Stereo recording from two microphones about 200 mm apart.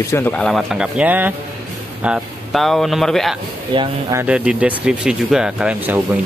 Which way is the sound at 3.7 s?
25° right (ahead or behind).